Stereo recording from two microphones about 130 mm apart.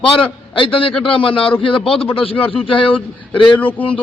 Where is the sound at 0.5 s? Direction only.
40° left (ahead or behind).